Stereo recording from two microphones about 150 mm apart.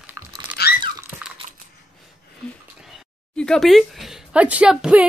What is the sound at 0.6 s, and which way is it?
Crunch, 90° left.